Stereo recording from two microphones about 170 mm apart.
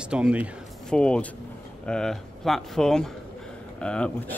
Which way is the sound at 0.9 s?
5° left (ahead or behind).